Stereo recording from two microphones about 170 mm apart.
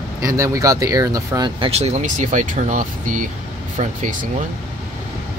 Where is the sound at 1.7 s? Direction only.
40° right (ahead or behind).